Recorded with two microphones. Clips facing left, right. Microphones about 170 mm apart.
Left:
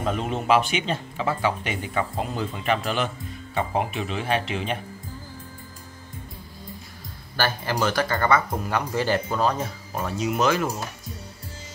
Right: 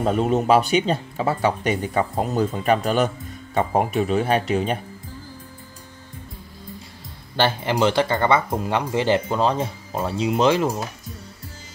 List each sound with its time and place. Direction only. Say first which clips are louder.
0.0 s speech: right 7 dB; 40° right (ahead or behind)
7.3 s speech: right 5 dB; 25° right (ahead or behind)